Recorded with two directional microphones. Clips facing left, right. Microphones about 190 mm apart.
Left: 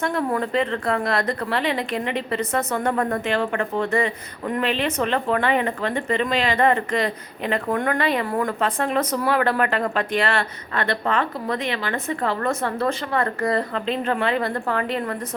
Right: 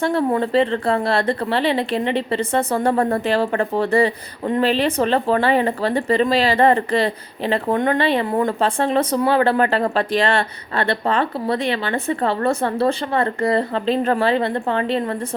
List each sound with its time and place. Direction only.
0.0 s a woman's voice: 30° right (ahead or behind)